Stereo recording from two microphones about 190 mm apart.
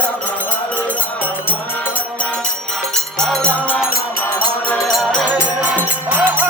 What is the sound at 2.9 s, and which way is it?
Music, 5° left (ahead or behind).